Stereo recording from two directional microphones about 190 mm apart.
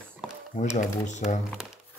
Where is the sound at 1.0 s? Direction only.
40° left (ahead or behind).